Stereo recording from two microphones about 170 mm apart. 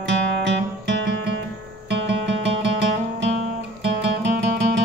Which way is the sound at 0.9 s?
90° right.